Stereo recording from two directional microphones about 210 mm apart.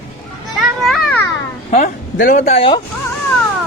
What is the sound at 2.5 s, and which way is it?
Speech, 25° left (ahead or behind).